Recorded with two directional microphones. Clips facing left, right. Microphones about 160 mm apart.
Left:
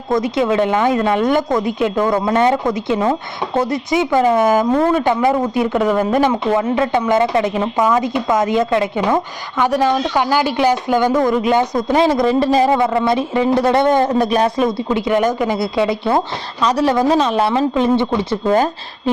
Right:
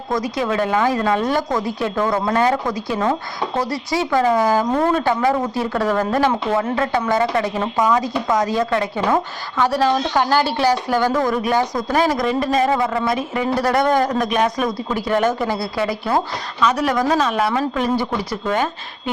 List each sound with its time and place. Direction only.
0.1 s speech: 25° left (ahead or behind)